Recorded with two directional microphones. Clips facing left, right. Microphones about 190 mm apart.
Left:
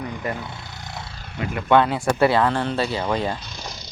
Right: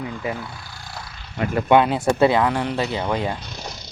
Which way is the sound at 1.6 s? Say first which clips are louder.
Right 1 dB; 15° right (ahead or behind).